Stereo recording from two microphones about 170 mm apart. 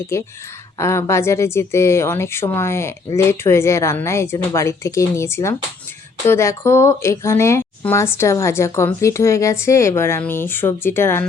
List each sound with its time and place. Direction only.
0.1 s speech: 15° left (ahead or behind)